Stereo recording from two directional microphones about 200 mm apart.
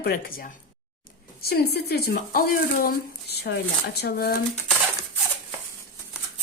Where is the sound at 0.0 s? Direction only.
45° left (ahead or behind).